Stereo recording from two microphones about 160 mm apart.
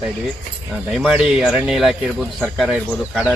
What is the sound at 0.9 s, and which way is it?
Speech, centre (ahead or behind).